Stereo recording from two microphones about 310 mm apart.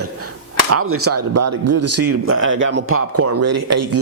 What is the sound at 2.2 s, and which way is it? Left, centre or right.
A man's voice, right.